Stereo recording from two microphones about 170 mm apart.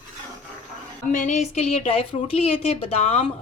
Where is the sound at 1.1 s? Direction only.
45° left (ahead or behind).